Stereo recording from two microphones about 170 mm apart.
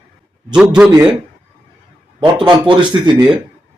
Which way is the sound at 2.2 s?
30° right (ahead or behind).